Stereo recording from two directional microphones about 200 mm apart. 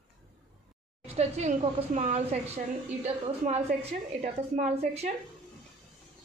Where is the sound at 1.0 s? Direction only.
30° right (ahead or behind).